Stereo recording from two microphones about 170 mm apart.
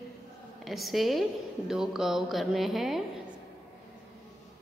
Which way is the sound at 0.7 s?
Centre (ahead or behind).